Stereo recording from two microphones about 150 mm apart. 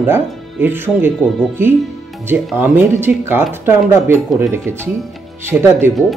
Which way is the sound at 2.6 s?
15° right (ahead or behind).